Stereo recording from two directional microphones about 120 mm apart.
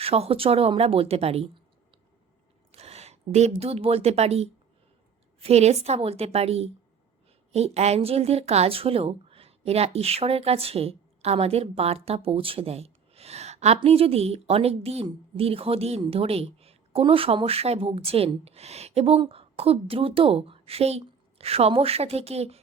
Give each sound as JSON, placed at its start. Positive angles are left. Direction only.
{"t": 0.0, "sound": "a woman's voice", "side_deg": -55}
{"t": 2.7, "sound": "a sound", "side_deg": -60}
{"t": 3.6, "sound": "a woman's voice", "side_deg": -55}
{"t": 13.7, "sound": "a woman's voice", "side_deg": -55}